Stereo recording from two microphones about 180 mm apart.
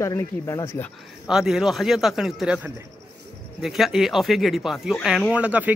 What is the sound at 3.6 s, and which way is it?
Speech, centre (ahead or behind).